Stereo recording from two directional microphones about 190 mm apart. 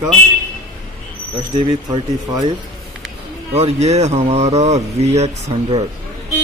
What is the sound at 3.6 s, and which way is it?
Speech, 35° right (ahead or behind).